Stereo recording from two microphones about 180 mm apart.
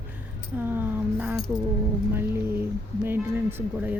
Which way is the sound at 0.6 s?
10° right (ahead or behind).